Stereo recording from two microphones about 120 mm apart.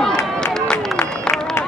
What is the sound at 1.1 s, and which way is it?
Run, 5° left (ahead or behind).